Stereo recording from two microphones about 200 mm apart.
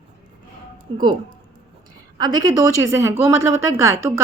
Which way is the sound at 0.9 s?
25° right (ahead or behind).